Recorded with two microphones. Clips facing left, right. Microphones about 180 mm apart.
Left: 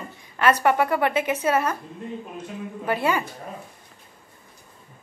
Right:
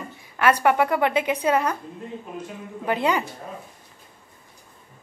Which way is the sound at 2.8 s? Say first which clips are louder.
Right 1 dB; 20° right (ahead or behind).